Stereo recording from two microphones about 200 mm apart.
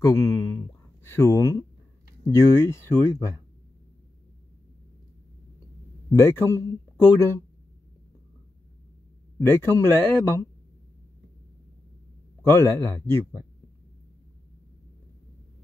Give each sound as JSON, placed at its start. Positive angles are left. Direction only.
{"t": 0.0, "sound": "speech", "side_deg": 15}
{"t": 6.0, "sound": "speech", "side_deg": 15}
{"t": 9.4, "sound": "speech", "side_deg": 10}
{"t": 12.4, "sound": "speech", "side_deg": 15}